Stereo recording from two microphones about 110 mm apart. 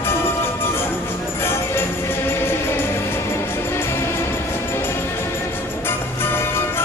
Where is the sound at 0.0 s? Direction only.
20° left (ahead or behind).